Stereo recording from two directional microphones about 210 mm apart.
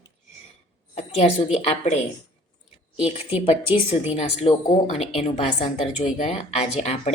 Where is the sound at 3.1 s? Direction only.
25° left (ahead or behind).